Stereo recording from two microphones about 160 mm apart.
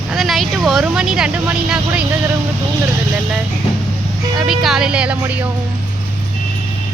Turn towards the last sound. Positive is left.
turn(degrees=-10)  # may be behind; listen again after turning